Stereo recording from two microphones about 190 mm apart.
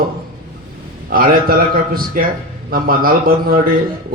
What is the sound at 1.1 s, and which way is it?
A man's voice, 50° right (ahead or behind).